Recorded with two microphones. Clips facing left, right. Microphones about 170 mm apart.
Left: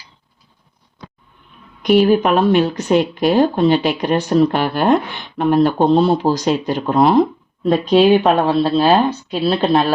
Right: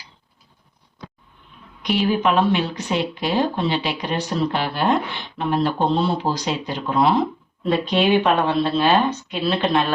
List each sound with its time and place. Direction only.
1.8 s speech: 50° left (ahead or behind)